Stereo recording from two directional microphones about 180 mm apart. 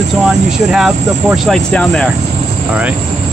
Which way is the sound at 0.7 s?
Centre (ahead or behind).